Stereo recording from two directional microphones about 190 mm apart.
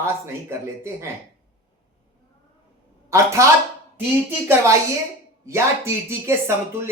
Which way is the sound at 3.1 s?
15° right (ahead or behind).